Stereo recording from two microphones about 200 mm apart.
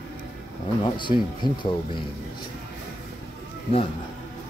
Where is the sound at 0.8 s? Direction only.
25° left (ahead or behind).